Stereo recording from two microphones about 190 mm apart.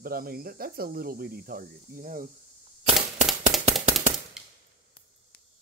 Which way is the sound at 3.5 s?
Centre (ahead or behind).